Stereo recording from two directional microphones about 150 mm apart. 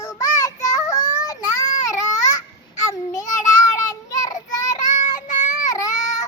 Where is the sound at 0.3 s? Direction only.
25° left (ahead or behind).